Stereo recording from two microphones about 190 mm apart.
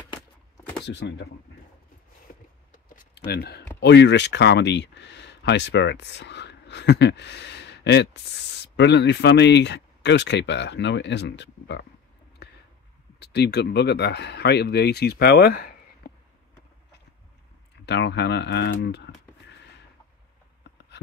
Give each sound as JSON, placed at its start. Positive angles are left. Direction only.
{"t": 0.8, "sound": "speech", "side_deg": 65}
{"t": 3.3, "sound": "speech", "side_deg": 55}
{"t": 13.2, "sound": "speech", "side_deg": 60}
{"t": 16.0, "sound": "a sound", "side_deg": 55}
{"t": 17.8, "sound": "speech", "side_deg": 65}